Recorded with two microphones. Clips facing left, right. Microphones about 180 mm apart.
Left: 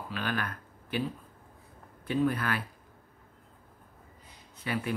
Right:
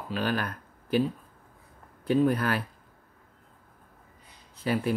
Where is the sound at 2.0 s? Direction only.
40° right (ahead or behind).